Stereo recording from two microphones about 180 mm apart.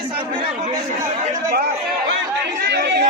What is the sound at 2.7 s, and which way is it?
Chatter, 65° right (ahead or behind).